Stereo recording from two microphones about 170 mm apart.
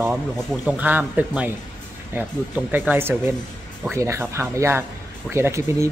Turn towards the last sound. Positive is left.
turn(degrees=-15)  # may be behind; listen again after turning